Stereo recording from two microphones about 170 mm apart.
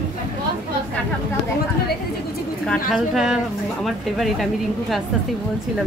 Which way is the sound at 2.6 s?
Centre (ahead or behind).